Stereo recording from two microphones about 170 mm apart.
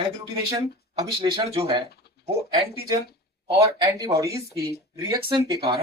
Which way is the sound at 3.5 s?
35° right (ahead or behind).